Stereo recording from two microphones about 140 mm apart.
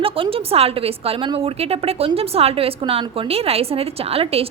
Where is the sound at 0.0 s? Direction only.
40° right (ahead or behind).